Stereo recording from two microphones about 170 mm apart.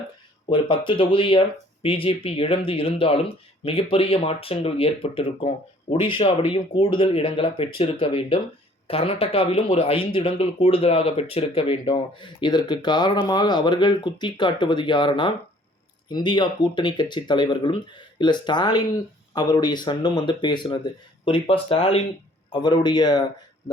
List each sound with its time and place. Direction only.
0.5 s speech: 30° left (ahead or behind)